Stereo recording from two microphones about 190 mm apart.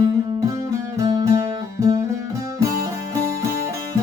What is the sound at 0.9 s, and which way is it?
Music, 15° right (ahead or behind).